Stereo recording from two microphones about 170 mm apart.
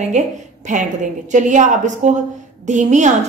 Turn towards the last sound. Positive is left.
turn(degrees=-45)  # may be behind; listen again after turning